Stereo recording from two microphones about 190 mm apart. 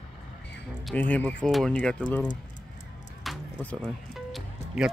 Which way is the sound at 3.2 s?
5° left (ahead or behind).